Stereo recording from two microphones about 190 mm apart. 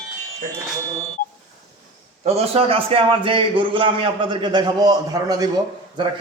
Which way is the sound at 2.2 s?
35° right (ahead or behind).